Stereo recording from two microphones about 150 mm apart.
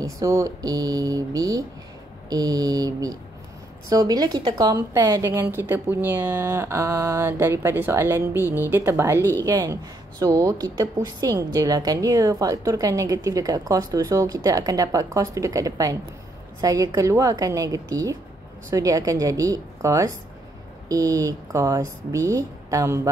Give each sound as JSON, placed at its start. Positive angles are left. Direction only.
{"t": 0.0, "sound": "a woman's voice", "side_deg": -20}